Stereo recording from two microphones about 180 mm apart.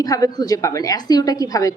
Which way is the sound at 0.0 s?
20° left (ahead or behind).